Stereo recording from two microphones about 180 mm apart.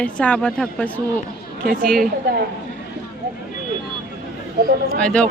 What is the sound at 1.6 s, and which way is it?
Speech, 55° right (ahead or behind).